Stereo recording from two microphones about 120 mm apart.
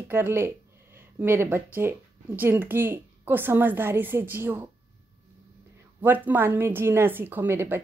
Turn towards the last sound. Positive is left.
turn(degrees=-20)  # may be behind; listen again after turning